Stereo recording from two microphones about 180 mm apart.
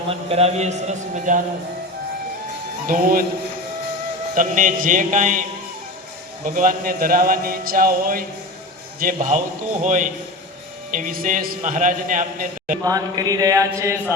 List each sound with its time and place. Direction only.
0.1 s a man's voice: 35° right (ahead or behind)
2.8 s a man's voice: 50° right (ahead or behind)
4.4 s a man's voice: 45° right (ahead or behind)
6.4 s a man's voice: 50° right (ahead or behind)
12.8 s a sound: 20° right (ahead or behind)